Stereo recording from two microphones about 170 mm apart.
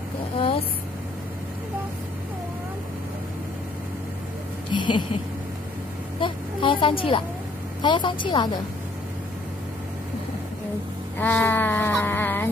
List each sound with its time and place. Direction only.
4.6 s a woman's voice: 30° left (ahead or behind)
6.1 s vehicle: 30° left (ahead or behind)
7.8 s a woman's voice: 25° left (ahead or behind)
11.1 s a sound: 10° left (ahead or behind)